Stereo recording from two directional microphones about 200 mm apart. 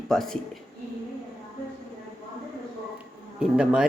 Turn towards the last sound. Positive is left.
turn(degrees=-5)  # may be behind; listen again after turning